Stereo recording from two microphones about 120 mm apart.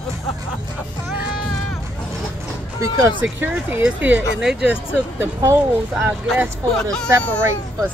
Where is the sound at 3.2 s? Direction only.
15° right (ahead or behind).